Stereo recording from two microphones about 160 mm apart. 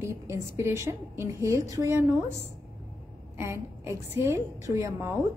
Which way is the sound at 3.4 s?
15° right (ahead or behind).